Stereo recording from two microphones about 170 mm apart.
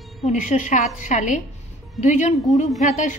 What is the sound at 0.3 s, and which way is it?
A woman's voice, 45° left (ahead or behind).